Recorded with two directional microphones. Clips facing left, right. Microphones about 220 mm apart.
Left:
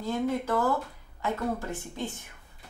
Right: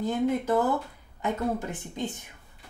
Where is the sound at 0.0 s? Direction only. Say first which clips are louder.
Right 3 dB; 20° right (ahead or behind).